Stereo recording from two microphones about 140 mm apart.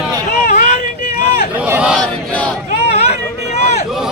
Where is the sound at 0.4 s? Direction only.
75° left (ahead or behind).